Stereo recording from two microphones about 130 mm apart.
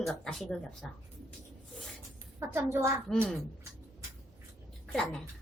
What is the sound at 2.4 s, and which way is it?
Speech, 20° right (ahead or behind).